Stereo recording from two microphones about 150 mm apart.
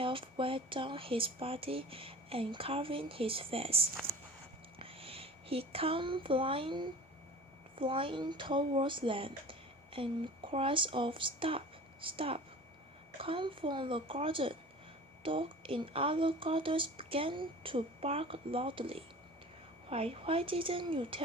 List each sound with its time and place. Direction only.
0.0 s speech: 35° right (ahead or behind)